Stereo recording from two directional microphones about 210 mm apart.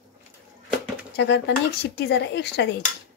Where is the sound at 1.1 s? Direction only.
55° left (ahead or behind).